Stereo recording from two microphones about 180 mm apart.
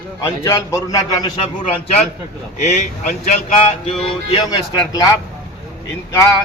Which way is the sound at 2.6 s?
40° left (ahead or behind).